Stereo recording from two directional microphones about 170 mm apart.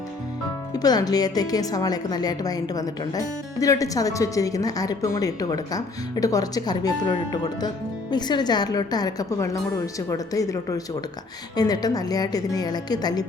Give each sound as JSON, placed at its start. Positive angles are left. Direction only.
{"t": 0.7, "sound": "speech", "side_deg": 20}
{"t": 8.1, "sound": "speech", "side_deg": 25}